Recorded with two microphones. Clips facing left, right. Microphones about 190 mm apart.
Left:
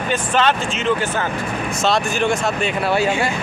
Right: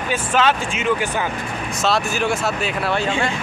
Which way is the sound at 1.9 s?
5° right (ahead or behind).